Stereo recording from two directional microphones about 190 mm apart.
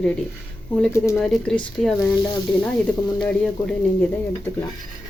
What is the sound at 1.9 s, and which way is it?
Speech, 20° left (ahead or behind).